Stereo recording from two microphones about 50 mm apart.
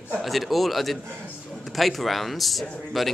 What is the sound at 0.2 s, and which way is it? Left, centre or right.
A woman's voice, centre.